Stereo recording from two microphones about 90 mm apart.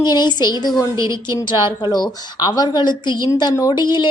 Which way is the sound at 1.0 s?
35° right (ahead or behind).